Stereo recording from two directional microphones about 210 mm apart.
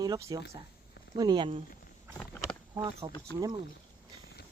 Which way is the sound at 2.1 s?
5° left (ahead or behind).